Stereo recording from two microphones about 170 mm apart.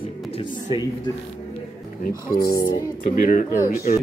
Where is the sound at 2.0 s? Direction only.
60° left (ahead or behind).